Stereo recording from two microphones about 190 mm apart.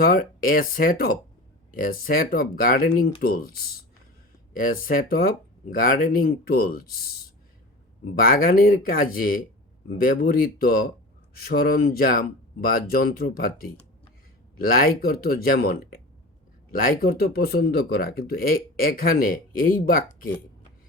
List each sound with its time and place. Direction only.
0.0 s speech: 50° left (ahead or behind)
8.2 s speech: 50° left (ahead or behind)
14.6 s speech: 50° left (ahead or behind)